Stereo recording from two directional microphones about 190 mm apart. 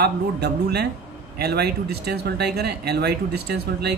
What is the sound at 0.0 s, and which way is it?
A man's voice, 60° right (ahead or behind).